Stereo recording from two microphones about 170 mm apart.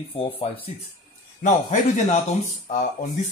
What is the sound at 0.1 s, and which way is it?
Speech, 35° left (ahead or behind).